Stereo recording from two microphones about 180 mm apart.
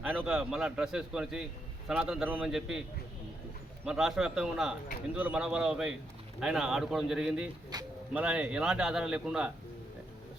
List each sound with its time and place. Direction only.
0.0 s a man's voice: 5° right (ahead or behind)
3.8 s a man's voice: centre (ahead or behind)
7.7 s speech: 20° right (ahead or behind)
8.1 s a man's voice: 5° right (ahead or behind)